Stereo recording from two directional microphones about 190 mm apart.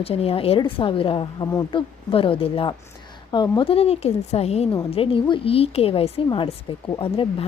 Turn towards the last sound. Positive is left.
turn(degrees=30)  # may be behind; listen again after turning